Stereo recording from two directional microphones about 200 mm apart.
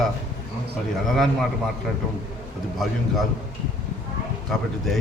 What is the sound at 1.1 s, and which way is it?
Speech, centre (ahead or behind).